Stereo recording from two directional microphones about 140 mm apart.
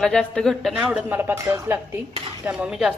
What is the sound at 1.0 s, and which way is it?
Speech, 15° right (ahead or behind).